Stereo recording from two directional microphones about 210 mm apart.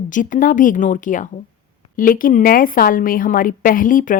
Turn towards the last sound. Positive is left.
turn(degrees=40)  # may be behind; listen again after turning